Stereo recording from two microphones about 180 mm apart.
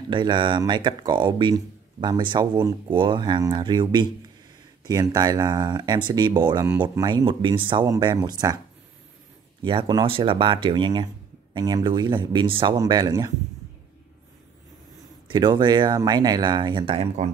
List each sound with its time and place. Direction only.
0.1 s speech: 25° right (ahead or behind)
9.6 s speech: 25° right (ahead or behind)
15.2 s speech: 25° right (ahead or behind)